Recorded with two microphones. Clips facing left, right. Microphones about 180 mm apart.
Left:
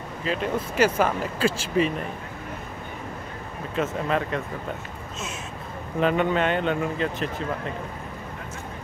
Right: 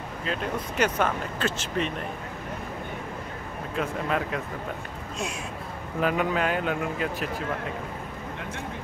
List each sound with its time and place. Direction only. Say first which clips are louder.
0.2 s speech: left 4 dB; centre (ahead or behind)
3.7 s speech: left 3 dB; centre (ahead or behind)
5.9 s speech: left 3 dB; 5° right (ahead or behind)